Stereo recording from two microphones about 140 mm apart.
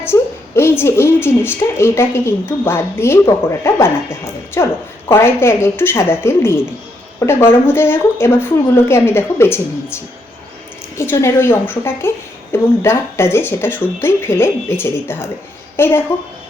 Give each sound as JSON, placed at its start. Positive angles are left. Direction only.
{"t": 0.0, "sound": "a woman's voice", "side_deg": 15}